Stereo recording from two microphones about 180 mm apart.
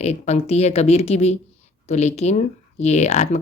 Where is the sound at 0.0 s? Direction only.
35° left (ahead or behind).